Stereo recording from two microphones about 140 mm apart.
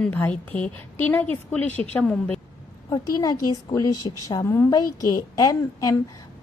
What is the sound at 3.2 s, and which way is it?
A woman's voice, 30° left (ahead or behind).